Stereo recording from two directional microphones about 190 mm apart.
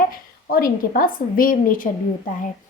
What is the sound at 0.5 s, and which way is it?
A woman's voice, 50° left (ahead or behind).